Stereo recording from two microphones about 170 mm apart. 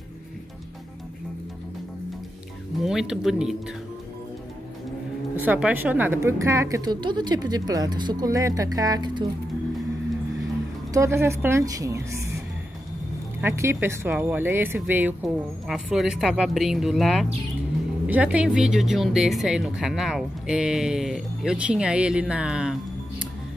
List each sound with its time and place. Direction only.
2.8 s speech: 5° right (ahead or behind)
5.4 s a woman's voice: 10° right (ahead or behind)
10.9 s a woman's voice: 15° right (ahead or behind)
13.4 s speech: 15° right (ahead or behind)